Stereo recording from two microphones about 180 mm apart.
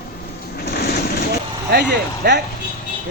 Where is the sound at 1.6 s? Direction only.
70° right (ahead or behind).